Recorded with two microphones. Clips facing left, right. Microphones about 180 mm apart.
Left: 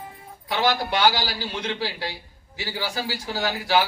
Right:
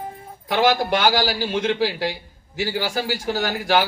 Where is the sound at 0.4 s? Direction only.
45° right (ahead or behind).